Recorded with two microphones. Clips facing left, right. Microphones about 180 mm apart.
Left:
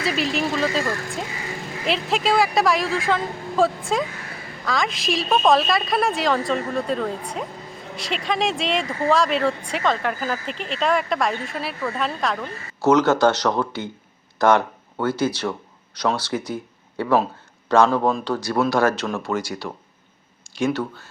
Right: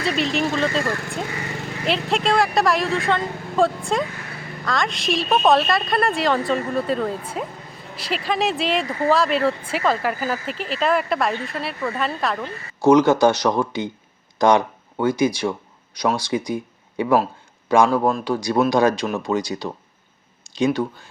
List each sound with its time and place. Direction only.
0.0 s speech: centre (ahead or behind)
12.4 s speech: 15° right (ahead or behind)